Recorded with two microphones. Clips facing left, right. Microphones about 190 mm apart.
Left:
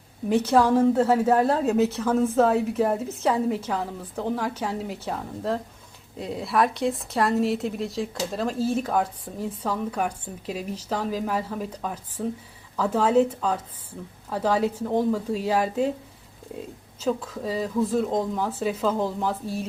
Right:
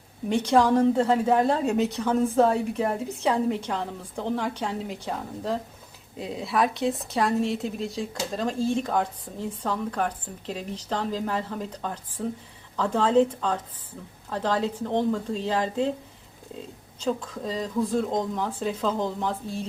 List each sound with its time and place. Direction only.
0.3 s a woman's voice: 5° left (ahead or behind)